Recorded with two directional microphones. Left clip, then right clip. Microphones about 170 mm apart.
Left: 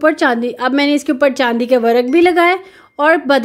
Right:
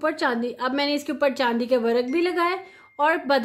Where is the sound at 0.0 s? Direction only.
30° left (ahead or behind).